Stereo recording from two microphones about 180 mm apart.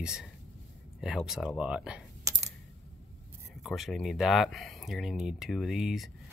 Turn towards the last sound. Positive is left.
turn(degrees=0)  # may be behind; listen again after turning